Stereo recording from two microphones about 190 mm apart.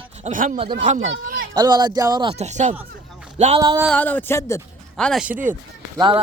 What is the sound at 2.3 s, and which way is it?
Speech, 35° right (ahead or behind).